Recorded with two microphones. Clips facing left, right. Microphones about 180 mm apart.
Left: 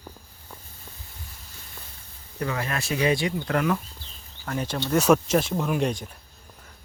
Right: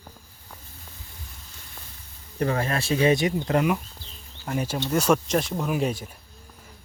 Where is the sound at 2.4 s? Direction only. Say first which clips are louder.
Right 4 dB; 35° right (ahead or behind); by 5.0 s 5° right (ahead or behind).